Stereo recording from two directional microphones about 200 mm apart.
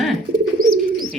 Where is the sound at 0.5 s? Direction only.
45° right (ahead or behind).